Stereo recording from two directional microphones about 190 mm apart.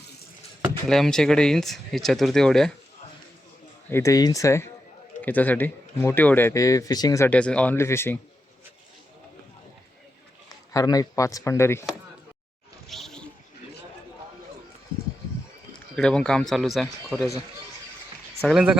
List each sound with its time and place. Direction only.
0.9 s speech: centre (ahead or behind)
3.8 s a man's voice: 15° left (ahead or behind)
7.3 s a man's voice: 5° left (ahead or behind)
10.7 s a man's voice: 20° left (ahead or behind)
12.9 s a sound: centre (ahead or behind)
16.0 s speech: 5° left (ahead or behind)
18.4 s speech: 5° right (ahead or behind)